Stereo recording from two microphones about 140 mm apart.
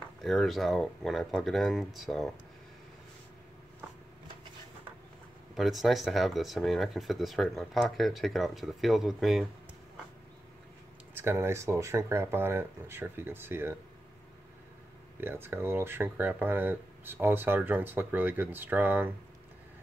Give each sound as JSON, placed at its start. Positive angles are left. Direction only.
{"t": 0.2, "sound": "speech", "side_deg": 0}
{"t": 5.5, "sound": "speech", "side_deg": 0}
{"t": 11.1, "sound": "speech", "side_deg": -20}
{"t": 15.1, "sound": "speech", "side_deg": -15}